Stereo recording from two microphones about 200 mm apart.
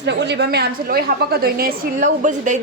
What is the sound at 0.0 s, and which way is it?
A woman's voice, 60° right (ahead or behind).